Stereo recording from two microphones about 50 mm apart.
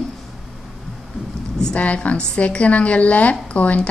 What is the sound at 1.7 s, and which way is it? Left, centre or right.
A woman's voice, left.